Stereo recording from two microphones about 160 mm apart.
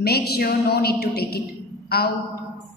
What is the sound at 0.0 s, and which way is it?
A woman's voice, 80° left.